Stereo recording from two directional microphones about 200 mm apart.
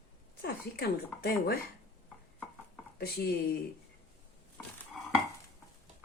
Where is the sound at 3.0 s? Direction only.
50° left (ahead or behind).